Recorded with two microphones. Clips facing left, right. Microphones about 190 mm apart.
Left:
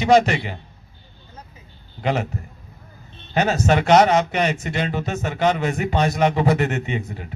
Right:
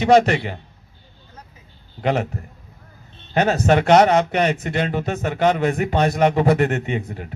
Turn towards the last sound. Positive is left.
turn(degrees=-50)  # may be behind; listen again after turning